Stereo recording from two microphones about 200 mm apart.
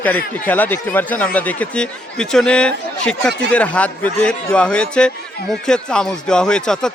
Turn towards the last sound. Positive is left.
turn(degrees=5)  # may be behind; listen again after turning